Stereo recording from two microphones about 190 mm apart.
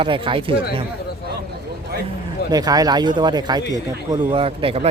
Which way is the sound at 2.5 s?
20° right (ahead or behind).